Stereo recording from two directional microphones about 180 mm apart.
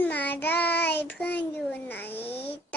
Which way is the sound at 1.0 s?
10° left (ahead or behind).